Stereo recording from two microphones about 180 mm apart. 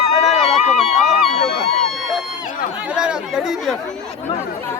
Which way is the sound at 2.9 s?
5° right (ahead or behind).